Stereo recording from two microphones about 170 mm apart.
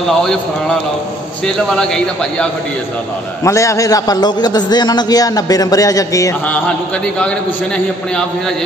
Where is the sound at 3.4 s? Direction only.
20° left (ahead or behind).